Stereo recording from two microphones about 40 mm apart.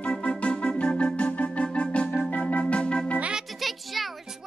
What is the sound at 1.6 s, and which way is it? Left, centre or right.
Organ, left.